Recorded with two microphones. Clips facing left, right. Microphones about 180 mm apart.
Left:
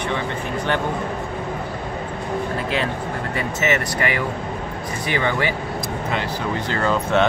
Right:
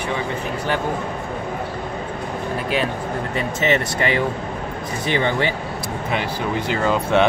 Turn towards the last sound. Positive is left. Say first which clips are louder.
# right 1 dB
turn(degrees=-15)  # may be behind; listen again after turning